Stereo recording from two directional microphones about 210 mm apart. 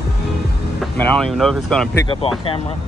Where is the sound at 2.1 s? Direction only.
25° left (ahead or behind).